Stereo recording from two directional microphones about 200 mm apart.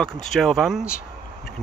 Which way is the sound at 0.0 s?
Centre (ahead or behind).